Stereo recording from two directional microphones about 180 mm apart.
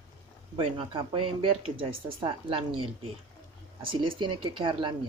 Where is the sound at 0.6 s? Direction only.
30° right (ahead or behind).